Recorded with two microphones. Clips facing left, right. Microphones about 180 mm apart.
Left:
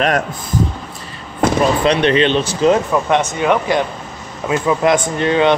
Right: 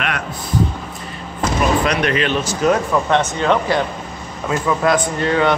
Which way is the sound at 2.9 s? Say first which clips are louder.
Left 1 dB; 15° left (ahead or behind).